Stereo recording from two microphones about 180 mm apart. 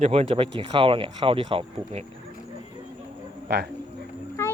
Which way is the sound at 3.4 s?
65° right (ahead or behind).